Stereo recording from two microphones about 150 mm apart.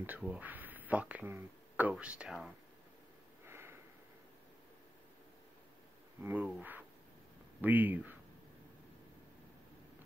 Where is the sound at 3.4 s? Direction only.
15° right (ahead or behind).